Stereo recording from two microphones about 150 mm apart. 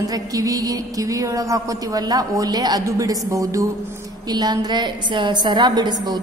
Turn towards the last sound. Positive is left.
turn(degrees=-30)  # may be behind; listen again after turning